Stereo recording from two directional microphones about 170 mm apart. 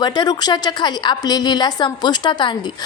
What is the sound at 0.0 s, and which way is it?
A woman's voice, 25° left (ahead or behind).